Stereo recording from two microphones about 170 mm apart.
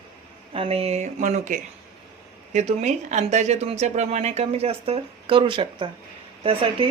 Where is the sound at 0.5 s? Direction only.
35° right (ahead or behind).